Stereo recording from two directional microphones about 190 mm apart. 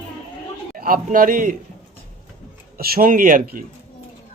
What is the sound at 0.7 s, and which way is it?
Speech, 45° right (ahead or behind).